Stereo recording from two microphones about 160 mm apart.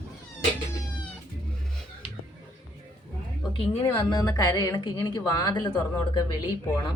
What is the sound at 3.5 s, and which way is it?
A woman's voice, 30° left (ahead or behind).